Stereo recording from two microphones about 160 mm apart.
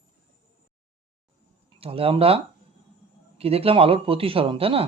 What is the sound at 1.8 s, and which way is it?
Speech, 35° right (ahead or behind).